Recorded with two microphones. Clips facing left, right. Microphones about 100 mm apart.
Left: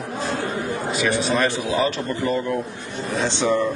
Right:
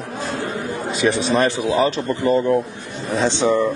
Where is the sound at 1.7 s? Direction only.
35° right (ahead or behind).